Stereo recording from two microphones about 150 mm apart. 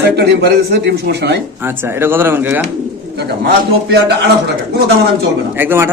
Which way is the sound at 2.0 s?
15° right (ahead or behind).